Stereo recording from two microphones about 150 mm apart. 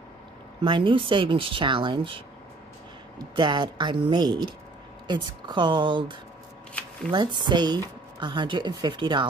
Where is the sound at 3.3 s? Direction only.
30° right (ahead or behind).